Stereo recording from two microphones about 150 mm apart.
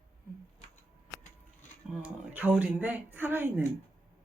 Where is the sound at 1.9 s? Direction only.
10° right (ahead or behind).